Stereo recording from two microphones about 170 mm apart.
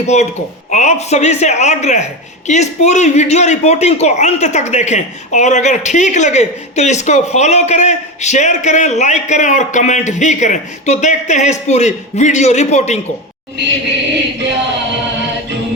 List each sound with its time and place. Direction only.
0.1 s a man's voice: 40° left (ahead or behind)
13.6 s chant: 90° right